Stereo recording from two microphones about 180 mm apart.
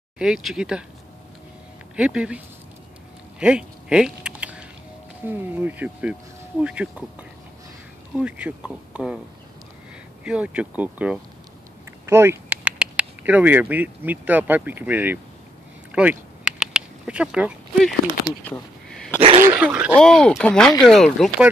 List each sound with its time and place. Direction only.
0.2 s speech: centre (ahead or behind)
2.0 s speech: 5° right (ahead or behind)
3.3 s a sound: 5° right (ahead or behind)
5.2 s speech: 10° right (ahead or behind)
8.2 s speech: 5° right (ahead or behind)
10.2 s speech: 5° right (ahead or behind)
15.9 s a sound: 5° right (ahead or behind)
19.1 s throat clearing: 30° right (ahead or behind)
19.4 s speech: 10° right (ahead or behind)
20.0 s speech: 5° left (ahead or behind)